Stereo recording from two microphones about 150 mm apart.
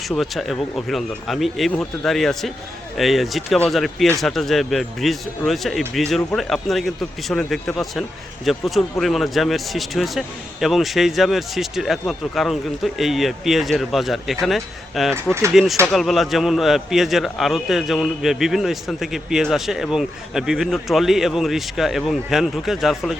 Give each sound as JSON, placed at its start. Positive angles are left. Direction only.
{"t": 0.2, "sound": "a man's voice", "side_deg": 0}